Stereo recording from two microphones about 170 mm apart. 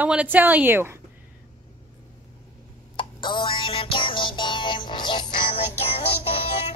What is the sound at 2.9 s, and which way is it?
Music, 30° left (ahead or behind).